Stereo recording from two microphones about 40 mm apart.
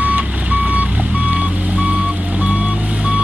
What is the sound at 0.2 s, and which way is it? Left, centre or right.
Reversing beeps, right.